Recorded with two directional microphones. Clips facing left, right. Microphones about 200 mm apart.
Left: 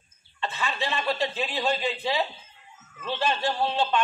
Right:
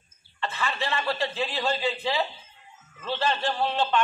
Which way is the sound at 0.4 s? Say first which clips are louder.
Even; 15° left (ahead or behind).